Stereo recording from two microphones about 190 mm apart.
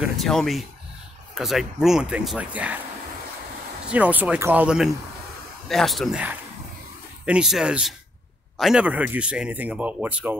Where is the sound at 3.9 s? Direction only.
10° right (ahead or behind).